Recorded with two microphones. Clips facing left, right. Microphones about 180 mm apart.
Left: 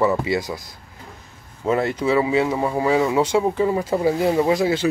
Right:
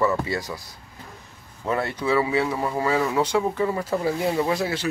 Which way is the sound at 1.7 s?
20° left (ahead or behind).